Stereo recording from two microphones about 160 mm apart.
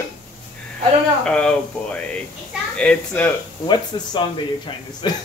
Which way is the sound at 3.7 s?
30° left (ahead or behind).